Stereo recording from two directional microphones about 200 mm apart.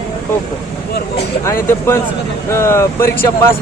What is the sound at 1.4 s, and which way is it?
Speech, 15° left (ahead or behind).